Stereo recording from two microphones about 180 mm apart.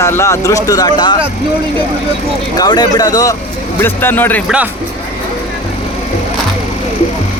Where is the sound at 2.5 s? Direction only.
20° left (ahead or behind).